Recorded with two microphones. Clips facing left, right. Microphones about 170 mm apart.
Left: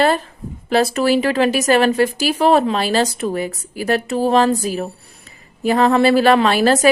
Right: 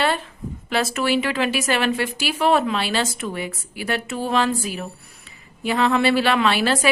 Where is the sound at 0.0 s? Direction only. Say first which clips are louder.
Left 6 dB; 40° left (ahead or behind).